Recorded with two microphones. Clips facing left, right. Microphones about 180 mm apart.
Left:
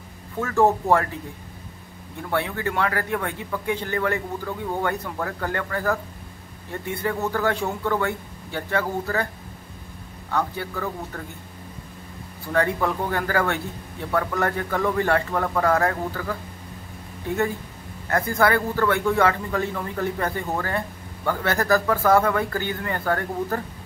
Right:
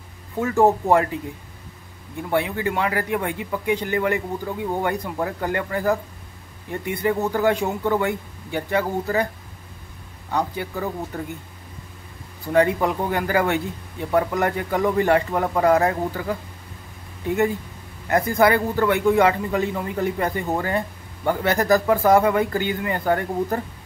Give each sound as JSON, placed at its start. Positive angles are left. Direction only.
{"t": 0.4, "sound": "speech", "side_deg": -15}
{"t": 2.3, "sound": "speech", "side_deg": -15}
{"t": 10.3, "sound": "speech", "side_deg": -15}
{"t": 12.5, "sound": "speech", "side_deg": -15}
{"t": 18.0, "sound": "speech", "side_deg": -15}